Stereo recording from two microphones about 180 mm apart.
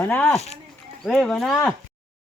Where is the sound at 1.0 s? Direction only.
Centre (ahead or behind).